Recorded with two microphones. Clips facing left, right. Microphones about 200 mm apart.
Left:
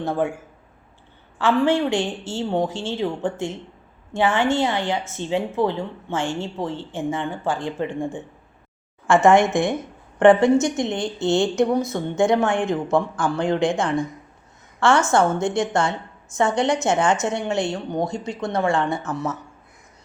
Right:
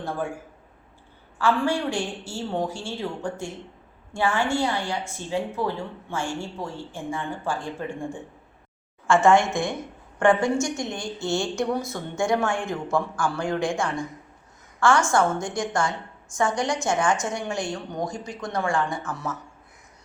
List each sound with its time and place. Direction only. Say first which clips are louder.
1.4 s a woman's voice: left 5 dB; 25° left (ahead or behind)